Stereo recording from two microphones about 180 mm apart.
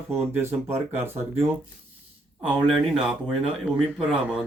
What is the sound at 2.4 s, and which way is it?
Speech, 5° right (ahead or behind).